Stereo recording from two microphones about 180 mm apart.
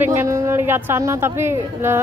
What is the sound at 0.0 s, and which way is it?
A woman's voice, 15° right (ahead or behind).